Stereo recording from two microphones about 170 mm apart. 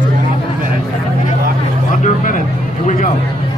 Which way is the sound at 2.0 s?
50° left (ahead or behind).